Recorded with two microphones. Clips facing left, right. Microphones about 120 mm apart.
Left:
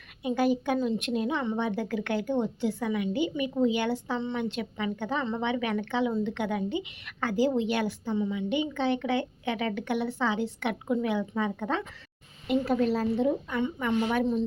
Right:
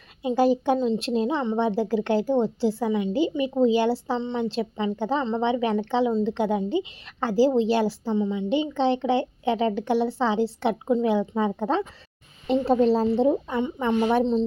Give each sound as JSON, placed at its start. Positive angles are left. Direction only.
{"t": 0.2, "sound": "a woman's voice", "side_deg": -30}